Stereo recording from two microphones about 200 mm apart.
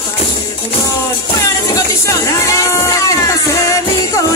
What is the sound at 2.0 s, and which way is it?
Music, 15° left (ahead or behind).